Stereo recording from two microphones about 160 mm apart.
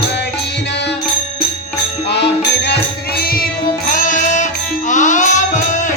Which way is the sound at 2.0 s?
90° left.